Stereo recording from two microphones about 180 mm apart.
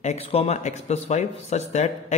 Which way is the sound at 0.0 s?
35° left (ahead or behind).